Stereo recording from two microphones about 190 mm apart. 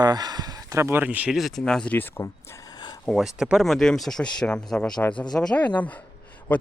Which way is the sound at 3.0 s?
Centre (ahead or behind).